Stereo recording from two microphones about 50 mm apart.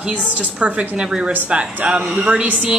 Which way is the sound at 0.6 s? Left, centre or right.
Right.